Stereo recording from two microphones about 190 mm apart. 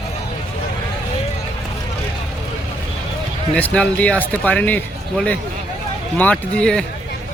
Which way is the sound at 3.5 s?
5° left (ahead or behind).